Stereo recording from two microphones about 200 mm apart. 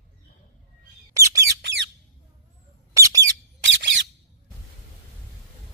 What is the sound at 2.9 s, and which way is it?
Bird, 15° right (ahead or behind).